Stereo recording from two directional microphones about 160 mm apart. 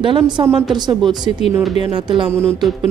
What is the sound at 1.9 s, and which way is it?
Speech, 30° right (ahead or behind).